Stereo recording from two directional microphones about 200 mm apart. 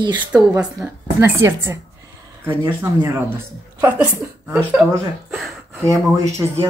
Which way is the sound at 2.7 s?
10° right (ahead or behind).